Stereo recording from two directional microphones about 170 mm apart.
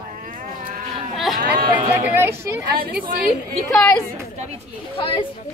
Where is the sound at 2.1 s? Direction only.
15° right (ahead or behind).